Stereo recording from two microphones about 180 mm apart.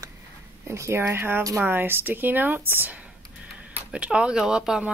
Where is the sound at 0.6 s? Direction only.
15° right (ahead or behind).